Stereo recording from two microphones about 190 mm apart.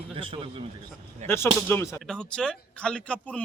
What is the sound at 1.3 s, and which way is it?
Speech, 10° left (ahead or behind).